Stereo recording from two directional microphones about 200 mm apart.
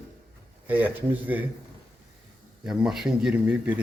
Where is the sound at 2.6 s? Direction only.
5° right (ahead or behind).